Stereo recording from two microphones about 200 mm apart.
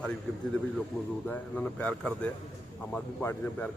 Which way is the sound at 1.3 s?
5° left (ahead or behind).